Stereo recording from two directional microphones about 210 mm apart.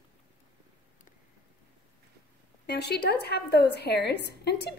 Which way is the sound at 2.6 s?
50° left (ahead or behind).